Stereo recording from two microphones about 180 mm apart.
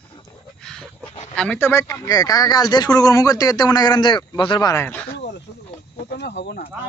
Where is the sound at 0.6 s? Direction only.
5° left (ahead or behind).